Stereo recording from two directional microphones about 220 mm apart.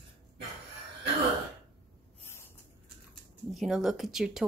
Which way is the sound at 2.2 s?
10° left (ahead or behind).